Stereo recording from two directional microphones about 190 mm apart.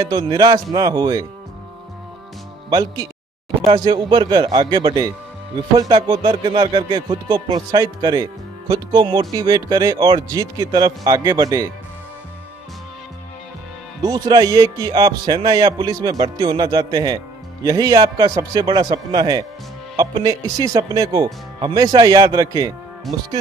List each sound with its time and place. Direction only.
0.0 s speech: 20° right (ahead or behind)
2.7 s speech: 20° right (ahead or behind)
14.0 s speech: 20° right (ahead or behind)
23.1 s speech: centre (ahead or behind)